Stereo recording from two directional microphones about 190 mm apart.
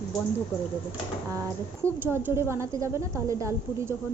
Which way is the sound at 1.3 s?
15° right (ahead or behind).